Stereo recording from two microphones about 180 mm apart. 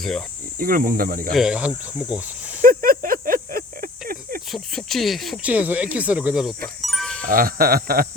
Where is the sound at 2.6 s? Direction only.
55° right (ahead or behind).